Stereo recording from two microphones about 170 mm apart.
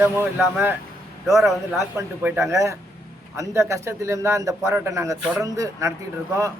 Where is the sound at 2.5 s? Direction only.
20° right (ahead or behind).